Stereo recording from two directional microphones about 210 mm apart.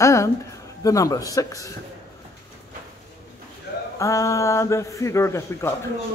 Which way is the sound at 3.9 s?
15° left (ahead or behind).